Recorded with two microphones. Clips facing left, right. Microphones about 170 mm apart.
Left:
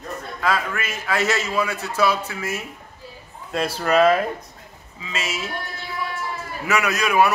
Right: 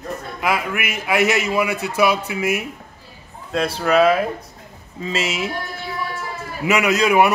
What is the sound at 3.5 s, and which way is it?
Speech, centre (ahead or behind).